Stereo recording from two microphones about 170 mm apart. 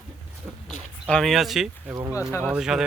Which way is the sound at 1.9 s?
20° right (ahead or behind).